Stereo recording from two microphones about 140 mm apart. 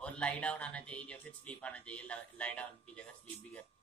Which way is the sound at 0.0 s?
10° left (ahead or behind).